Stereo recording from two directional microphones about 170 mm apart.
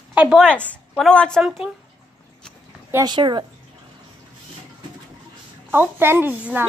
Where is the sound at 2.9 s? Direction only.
25° right (ahead or behind).